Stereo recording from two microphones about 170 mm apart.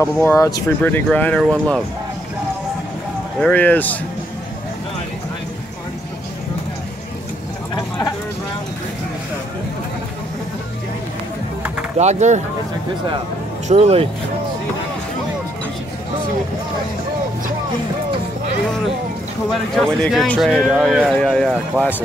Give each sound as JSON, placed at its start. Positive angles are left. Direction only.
{"t": 0.0, "sound": "speech", "side_deg": 15}
{"t": 0.8, "sound": "speech", "side_deg": 10}
{"t": 3.3, "sound": "speech", "side_deg": 5}
{"t": 12.0, "sound": "speech", "side_deg": -40}
{"t": 13.7, "sound": "speech", "side_deg": -35}
{"t": 19.7, "sound": "speech", "side_deg": 5}
{"t": 21.8, "sound": "speech", "side_deg": -15}